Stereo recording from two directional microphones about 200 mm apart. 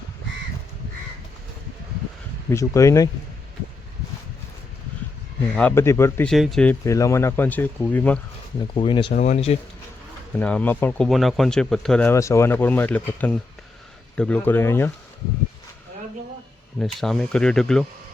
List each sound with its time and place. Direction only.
2.5 s speech: 15° left (ahead or behind)
5.5 s speech: 10° left (ahead or behind)
6.3 s speech: centre (ahead or behind)
8.7 s speech: 25° left (ahead or behind)
9.1 s speech: 35° left (ahead or behind)
10.3 s speech: 5° left (ahead or behind)
16.8 s speech: centre (ahead or behind)